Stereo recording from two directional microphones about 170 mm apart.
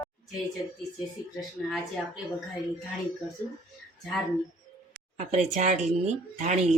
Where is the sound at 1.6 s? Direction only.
5° left (ahead or behind).